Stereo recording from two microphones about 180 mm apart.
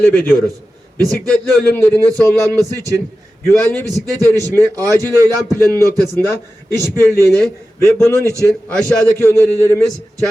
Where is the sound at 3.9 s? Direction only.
20° right (ahead or behind).